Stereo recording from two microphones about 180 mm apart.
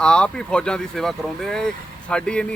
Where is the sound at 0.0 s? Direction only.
5° left (ahead or behind).